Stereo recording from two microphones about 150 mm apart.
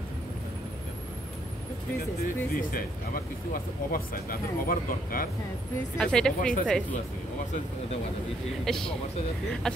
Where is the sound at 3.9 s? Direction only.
70° left (ahead or behind).